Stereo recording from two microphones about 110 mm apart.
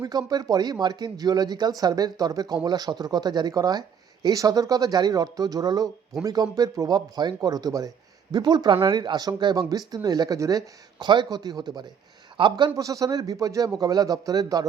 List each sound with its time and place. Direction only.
0.0 s speech: 35° right (ahead or behind)
11.0 s a man's voice: 45° right (ahead or behind)
12.7 s speech: 30° right (ahead or behind)